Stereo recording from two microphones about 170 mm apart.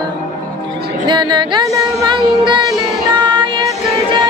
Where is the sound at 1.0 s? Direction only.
25° right (ahead or behind).